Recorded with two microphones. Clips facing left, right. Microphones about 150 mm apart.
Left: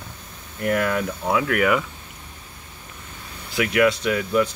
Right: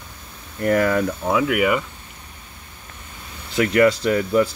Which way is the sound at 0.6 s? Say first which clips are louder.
Right 4 dB; 35° right (ahead or behind).